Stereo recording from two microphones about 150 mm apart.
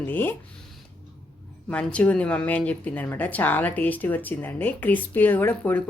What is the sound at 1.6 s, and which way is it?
A woman's voice, 10° left (ahead or behind).